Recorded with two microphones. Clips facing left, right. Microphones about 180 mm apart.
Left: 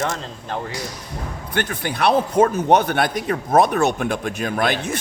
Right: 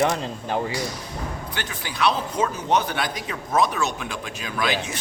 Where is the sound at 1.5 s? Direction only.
55° left (ahead or behind).